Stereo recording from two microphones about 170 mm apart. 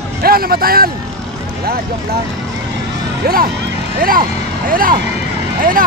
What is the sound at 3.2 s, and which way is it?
Speech, 60° right (ahead or behind).